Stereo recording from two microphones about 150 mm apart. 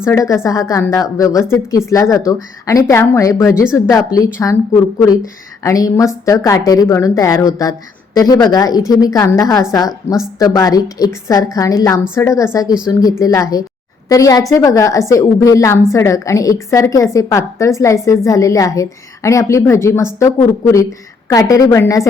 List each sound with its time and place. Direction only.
0.0 s a woman's voice: 20° left (ahead or behind)